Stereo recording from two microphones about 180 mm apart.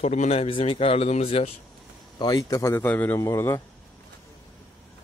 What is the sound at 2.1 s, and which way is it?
A man's voice, 20° left (ahead or behind).